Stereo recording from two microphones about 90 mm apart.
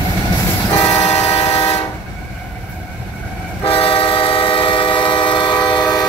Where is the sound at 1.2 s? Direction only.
90° left.